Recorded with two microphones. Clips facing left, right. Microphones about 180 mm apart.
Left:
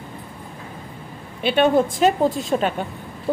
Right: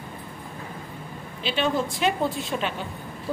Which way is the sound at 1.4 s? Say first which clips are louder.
Left 8 dB; 55° left (ahead or behind).